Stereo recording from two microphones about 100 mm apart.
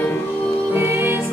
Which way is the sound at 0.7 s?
20° right (ahead or behind).